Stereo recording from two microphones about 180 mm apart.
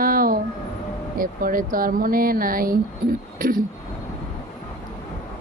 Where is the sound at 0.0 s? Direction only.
50° right (ahead or behind).